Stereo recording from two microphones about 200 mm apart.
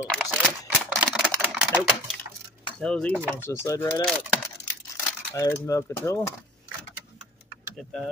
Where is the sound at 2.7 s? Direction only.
5° left (ahead or behind).